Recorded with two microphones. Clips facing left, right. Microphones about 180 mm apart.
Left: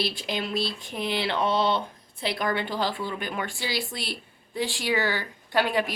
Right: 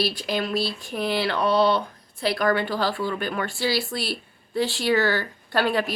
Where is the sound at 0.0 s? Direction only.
20° left (ahead or behind).